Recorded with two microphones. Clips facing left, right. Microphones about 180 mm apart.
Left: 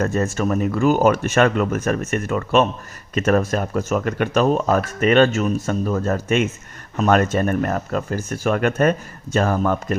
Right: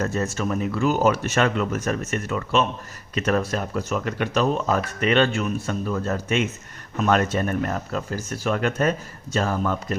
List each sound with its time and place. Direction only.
0.0 s speech: 50° left (ahead or behind)